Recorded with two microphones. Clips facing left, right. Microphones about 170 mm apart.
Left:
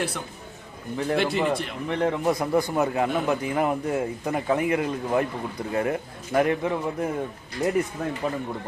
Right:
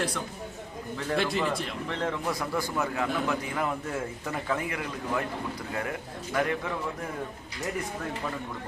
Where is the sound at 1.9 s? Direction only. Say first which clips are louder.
Left 8 dB; 15° left (ahead or behind).